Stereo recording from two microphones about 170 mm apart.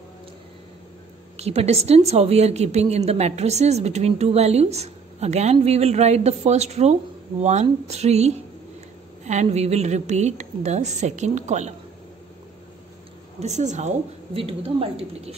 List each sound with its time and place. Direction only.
1.3 s a woman's voice: 35° right (ahead or behind)
13.4 s a woman's voice: 40° right (ahead or behind)